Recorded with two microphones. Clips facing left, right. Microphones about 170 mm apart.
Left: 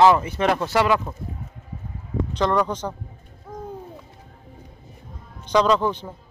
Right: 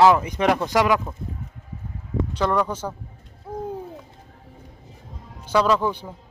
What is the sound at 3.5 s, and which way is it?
Bird, 35° right (ahead or behind).